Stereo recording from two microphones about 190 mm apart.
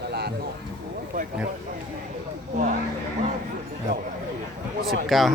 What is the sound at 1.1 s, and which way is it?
Boat, 45° right (ahead or behind).